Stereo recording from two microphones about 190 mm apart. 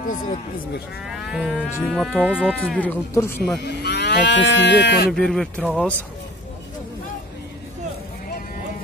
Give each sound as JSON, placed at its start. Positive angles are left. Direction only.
{"t": 1.0, "sound": "livestock", "side_deg": 0}
{"t": 3.6, "sound": "moo", "side_deg": 65}
{"t": 5.1, "sound": "livestock", "side_deg": 0}